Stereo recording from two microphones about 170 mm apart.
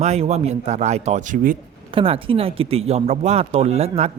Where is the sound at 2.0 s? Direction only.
30° right (ahead or behind).